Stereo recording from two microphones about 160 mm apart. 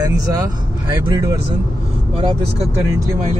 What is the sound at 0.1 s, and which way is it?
Speech, 20° right (ahead or behind).